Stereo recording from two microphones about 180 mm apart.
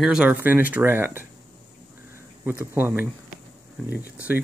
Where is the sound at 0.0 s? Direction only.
5° right (ahead or behind).